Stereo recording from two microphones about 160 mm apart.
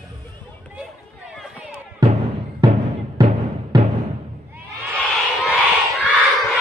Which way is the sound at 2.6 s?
25° right (ahead or behind).